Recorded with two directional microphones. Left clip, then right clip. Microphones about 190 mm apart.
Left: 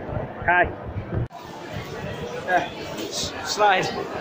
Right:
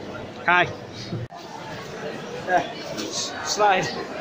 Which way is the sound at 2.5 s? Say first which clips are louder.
Even; centre (ahead or behind).